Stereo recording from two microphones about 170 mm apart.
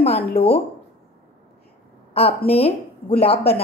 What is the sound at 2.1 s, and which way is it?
A woman's voice, 35° left (ahead or behind).